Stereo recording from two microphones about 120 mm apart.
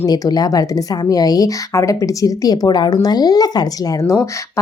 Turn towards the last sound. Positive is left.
turn(degrees=30)  # may be behind; listen again after turning